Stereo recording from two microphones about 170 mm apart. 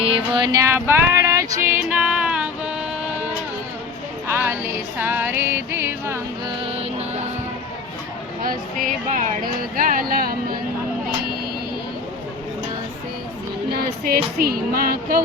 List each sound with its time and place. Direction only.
0.0 s music: 30° right (ahead or behind); by 2.7 s 5° right (ahead or behind)
4.3 s music: 15° right (ahead or behind)
8.4 s speech: 50° right (ahead or behind)
9.7 s music: 55° right (ahead or behind)
13.7 s music: 60° right (ahead or behind)